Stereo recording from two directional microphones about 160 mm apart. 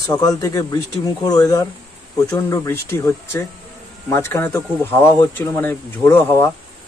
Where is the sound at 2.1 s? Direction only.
20° left (ahead or behind).